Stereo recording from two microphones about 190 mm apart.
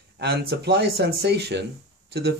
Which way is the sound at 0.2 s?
60° right (ahead or behind).